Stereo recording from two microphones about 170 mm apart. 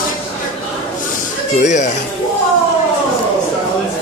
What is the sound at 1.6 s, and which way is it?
Speech, 45° left (ahead or behind).